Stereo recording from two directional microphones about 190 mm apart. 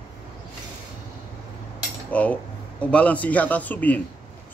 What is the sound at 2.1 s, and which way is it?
A man's voice, 10° left (ahead or behind).